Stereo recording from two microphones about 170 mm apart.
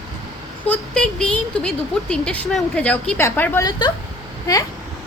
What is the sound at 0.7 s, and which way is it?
Speech, 5° left (ahead or behind).